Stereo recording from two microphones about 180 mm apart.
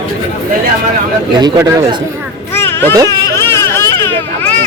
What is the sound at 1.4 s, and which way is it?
Speech, 20° right (ahead or behind).